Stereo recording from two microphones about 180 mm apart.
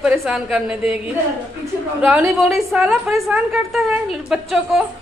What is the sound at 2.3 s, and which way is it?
A woman's voice, centre (ahead or behind).